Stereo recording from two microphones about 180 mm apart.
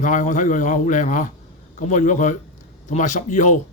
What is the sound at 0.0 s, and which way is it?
A man's voice, 45° left (ahead or behind).